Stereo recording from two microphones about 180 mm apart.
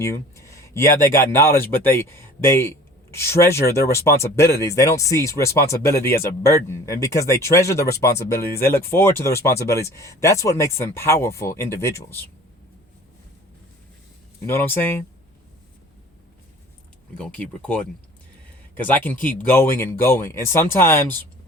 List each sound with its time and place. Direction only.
0.0 s speech: 15° left (ahead or behind)
14.4 s speech: 15° left (ahead or behind)
17.2 s speech: 5° left (ahead or behind)
18.9 s speech: 10° left (ahead or behind)